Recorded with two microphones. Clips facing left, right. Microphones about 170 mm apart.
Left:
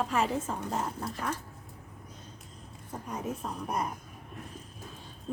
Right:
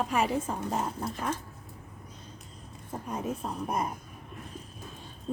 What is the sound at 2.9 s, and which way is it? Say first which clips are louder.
Speech: right 2 dB; 25° right (ahead or behind).